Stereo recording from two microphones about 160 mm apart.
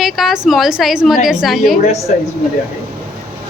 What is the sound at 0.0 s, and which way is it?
A woman's voice, centre (ahead or behind).